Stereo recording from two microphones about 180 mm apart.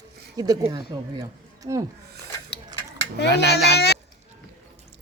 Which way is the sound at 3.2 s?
70° left (ahead or behind).